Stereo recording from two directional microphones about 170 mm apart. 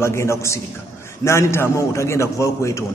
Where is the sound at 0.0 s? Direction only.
15° left (ahead or behind).